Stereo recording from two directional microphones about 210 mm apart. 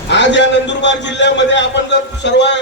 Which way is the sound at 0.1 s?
55° left (ahead or behind).